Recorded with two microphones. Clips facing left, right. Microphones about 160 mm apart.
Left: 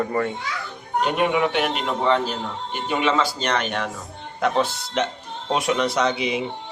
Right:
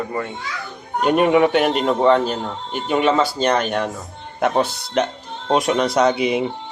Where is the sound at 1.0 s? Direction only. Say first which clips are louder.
Right 7 dB; 50° right (ahead or behind).